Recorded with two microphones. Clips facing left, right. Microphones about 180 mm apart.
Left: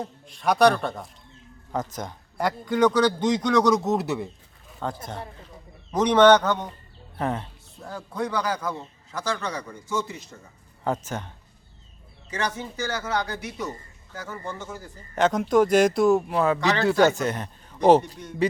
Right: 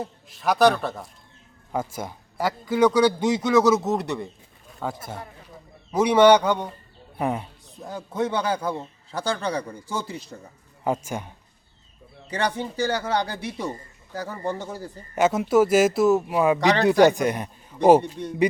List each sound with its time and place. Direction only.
0.0 s a man's voice: 5° right (ahead or behind)
4.7 s a sound: 5° right (ahead or behind)
5.9 s a man's voice: 10° right (ahead or behind); by 10.2 s 35° right (ahead or behind)
10.8 s a man's voice: 10° right (ahead or behind)
12.3 s a man's voice: 35° right (ahead or behind)
15.1 s speech: 5° right (ahead or behind)